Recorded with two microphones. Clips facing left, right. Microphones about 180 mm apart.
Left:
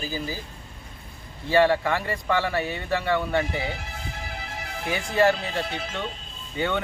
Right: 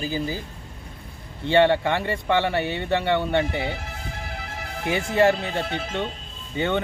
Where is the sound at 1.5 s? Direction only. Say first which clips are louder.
Right 2 dB; 25° right (ahead or behind).